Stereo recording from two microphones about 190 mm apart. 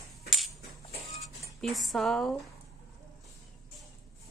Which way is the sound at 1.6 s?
Centre (ahead or behind).